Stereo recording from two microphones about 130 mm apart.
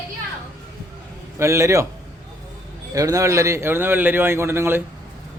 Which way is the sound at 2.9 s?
25° right (ahead or behind).